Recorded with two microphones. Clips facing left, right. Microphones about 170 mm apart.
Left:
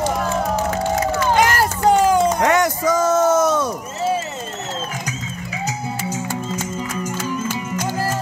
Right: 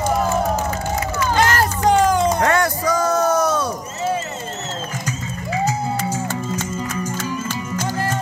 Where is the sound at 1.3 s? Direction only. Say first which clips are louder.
Left 1 dB; 10° left (ahead or behind).